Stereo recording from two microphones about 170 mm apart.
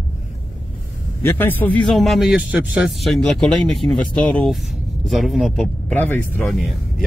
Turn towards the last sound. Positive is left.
turn(degrees=10)  # may be behind; listen again after turning